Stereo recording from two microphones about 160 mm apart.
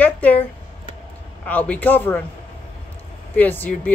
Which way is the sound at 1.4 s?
10° left (ahead or behind).